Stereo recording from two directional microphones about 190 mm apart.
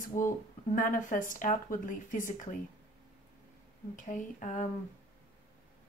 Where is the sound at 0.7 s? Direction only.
45° left (ahead or behind).